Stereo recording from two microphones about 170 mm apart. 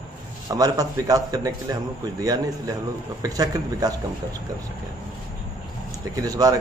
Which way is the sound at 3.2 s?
20° right (ahead or behind).